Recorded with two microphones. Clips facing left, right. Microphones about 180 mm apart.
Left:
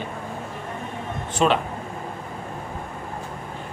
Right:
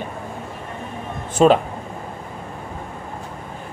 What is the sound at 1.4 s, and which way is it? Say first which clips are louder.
Speech: right 7 dB; 35° right (ahead or behind).